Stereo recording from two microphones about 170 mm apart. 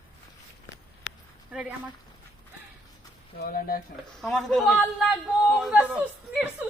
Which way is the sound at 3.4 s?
60° left (ahead or behind).